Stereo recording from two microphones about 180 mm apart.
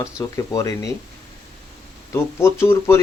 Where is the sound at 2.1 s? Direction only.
15° left (ahead or behind).